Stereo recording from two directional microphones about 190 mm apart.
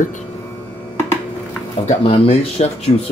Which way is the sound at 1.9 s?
35° left (ahead or behind).